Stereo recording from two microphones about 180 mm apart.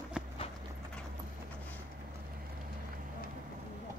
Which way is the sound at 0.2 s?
5° right (ahead or behind).